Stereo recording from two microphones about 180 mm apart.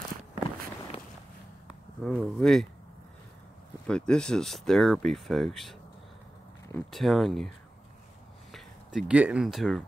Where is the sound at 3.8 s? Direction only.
5° left (ahead or behind).